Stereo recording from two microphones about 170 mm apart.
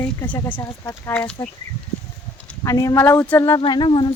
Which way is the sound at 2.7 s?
20° left (ahead or behind).